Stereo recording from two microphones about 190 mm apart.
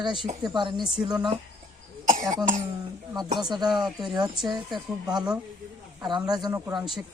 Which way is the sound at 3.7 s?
20° right (ahead or behind).